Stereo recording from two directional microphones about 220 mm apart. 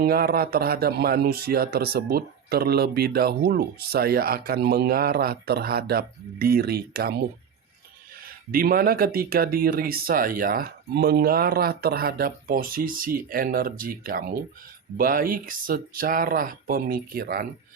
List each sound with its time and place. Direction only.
0.0 s speech: 45° right (ahead or behind)